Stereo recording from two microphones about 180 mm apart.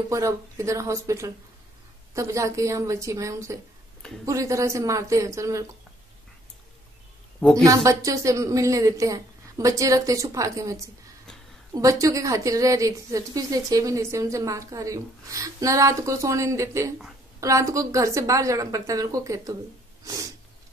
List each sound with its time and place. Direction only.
0.1 s a woman's voice: 15° right (ahead or behind)
7.3 s a woman's voice: 5° left (ahead or behind)
7.6 s a woman's voice: 15° right (ahead or behind)